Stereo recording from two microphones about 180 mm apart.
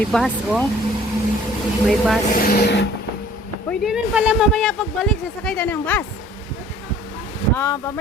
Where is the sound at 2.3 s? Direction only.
55° left (ahead or behind).